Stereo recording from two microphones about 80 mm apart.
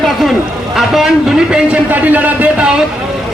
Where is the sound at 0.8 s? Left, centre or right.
Centre.